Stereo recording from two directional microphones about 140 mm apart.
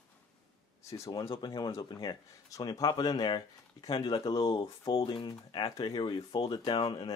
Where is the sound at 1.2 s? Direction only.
35° left (ahead or behind).